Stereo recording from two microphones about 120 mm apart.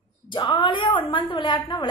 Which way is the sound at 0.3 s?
40° left (ahead or behind).